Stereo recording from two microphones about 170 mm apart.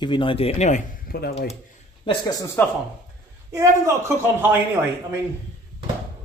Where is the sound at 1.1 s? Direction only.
60° left (ahead or behind).